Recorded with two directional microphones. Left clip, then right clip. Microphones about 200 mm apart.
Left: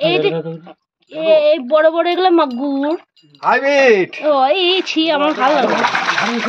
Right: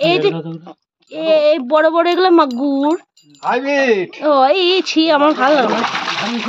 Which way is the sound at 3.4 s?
60° left (ahead or behind).